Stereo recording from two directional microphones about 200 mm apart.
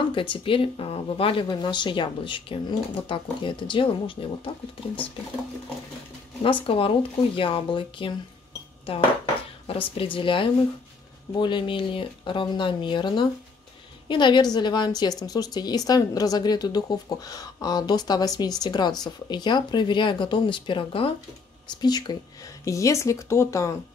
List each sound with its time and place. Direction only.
0.1 s a woman's voice: 25° left (ahead or behind)
6.4 s a woman's voice: 25° left (ahead or behind)